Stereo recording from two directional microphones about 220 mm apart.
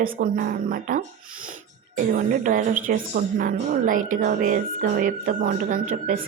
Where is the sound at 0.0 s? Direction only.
40° right (ahead or behind).